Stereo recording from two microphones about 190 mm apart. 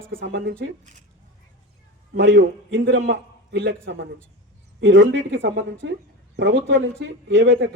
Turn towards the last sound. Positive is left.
turn(degrees=-70)  # may be behind; listen again after turning